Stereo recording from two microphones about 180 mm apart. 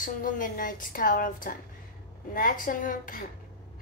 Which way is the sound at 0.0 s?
50° left (ahead or behind).